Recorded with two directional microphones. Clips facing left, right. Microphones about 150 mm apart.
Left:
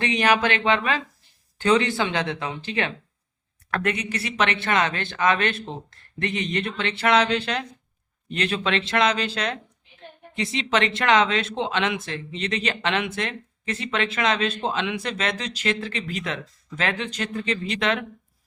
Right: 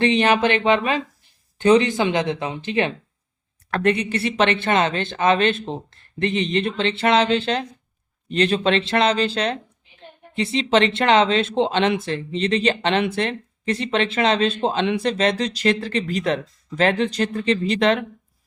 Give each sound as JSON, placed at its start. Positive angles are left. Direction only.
{"t": 0.0, "sound": "speech", "side_deg": -25}